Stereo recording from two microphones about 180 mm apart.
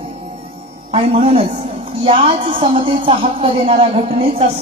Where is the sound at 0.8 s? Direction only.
35° right (ahead or behind).